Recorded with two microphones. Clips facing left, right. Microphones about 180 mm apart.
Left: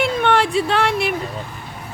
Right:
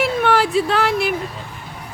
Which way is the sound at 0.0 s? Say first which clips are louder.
Even; 5° right (ahead or behind).